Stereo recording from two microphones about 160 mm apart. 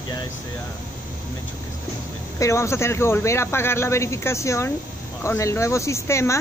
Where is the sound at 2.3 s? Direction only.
20° left (ahead or behind).